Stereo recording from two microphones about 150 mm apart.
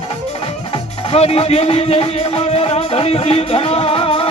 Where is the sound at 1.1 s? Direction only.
40° left (ahead or behind).